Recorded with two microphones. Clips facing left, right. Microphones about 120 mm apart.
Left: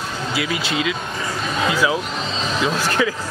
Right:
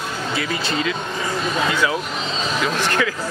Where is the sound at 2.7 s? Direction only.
10° left (ahead or behind).